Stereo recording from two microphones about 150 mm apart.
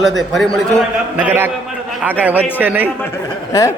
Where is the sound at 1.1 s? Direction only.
10° right (ahead or behind).